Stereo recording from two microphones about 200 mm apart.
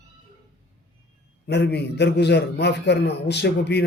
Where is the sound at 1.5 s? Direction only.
55° left (ahead or behind).